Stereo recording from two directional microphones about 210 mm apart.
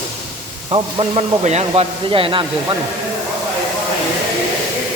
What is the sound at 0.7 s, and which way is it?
Speech, 30° right (ahead or behind).